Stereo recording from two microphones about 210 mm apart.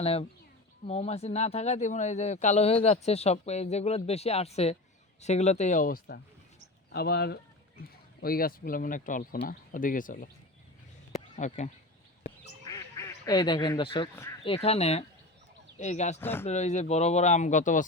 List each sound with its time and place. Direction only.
0.0 s speech: 30° left (ahead or behind)
11.3 s speech: 35° left (ahead or behind)
12.6 s quack: 15° left (ahead or behind)
14.4 s speech: 25° left (ahead or behind)
16.2 s speech: 10° left (ahead or behind)
16.5 s speech: 35° left (ahead or behind)